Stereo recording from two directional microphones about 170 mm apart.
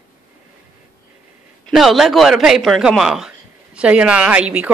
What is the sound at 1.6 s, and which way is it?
A man's voice, centre (ahead or behind).